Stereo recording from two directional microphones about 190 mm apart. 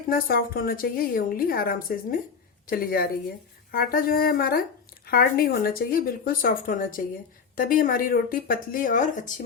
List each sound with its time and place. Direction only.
0.1 s a woman's voice: 50° left (ahead or behind)